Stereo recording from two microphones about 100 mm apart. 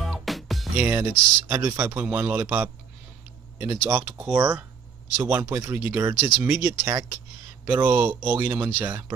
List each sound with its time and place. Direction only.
0.0 s music: centre (ahead or behind)
0.7 s speech: 25° right (ahead or behind)
2.0 s a man's voice: 15° right (ahead or behind)
4.2 s a man's voice: 10° right (ahead or behind)
5.1 s speech: 25° right (ahead or behind)